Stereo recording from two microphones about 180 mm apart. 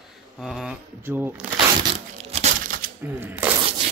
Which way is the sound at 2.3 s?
35° right (ahead or behind).